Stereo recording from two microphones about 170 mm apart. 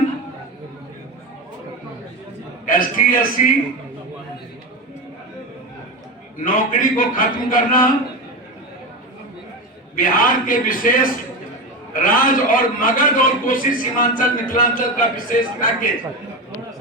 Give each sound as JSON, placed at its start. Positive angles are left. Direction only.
{"t": 2.6, "sound": "a man's voice", "side_deg": 55}
{"t": 6.4, "sound": "a man's voice", "side_deg": 50}
{"t": 9.9, "sound": "a man's voice", "side_deg": 55}